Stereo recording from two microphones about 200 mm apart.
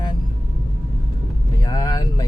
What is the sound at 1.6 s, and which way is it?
Speech, 20° left (ahead or behind).